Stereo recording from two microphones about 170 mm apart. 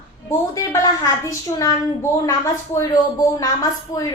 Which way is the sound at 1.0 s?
20° left (ahead or behind).